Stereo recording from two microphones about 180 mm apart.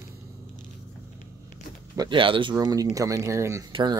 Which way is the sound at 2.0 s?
25° right (ahead or behind).